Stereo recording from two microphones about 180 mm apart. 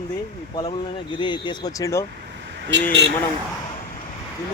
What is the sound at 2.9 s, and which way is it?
Speech, 70° right (ahead or behind).